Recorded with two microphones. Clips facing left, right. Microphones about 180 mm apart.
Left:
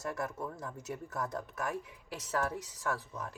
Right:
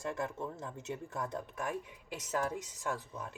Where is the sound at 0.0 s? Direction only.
25° right (ahead or behind).